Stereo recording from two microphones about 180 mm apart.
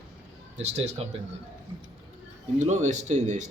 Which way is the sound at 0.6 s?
35° right (ahead or behind).